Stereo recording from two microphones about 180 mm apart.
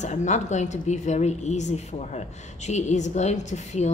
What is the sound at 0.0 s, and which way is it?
A woman's voice, 40° left (ahead or behind).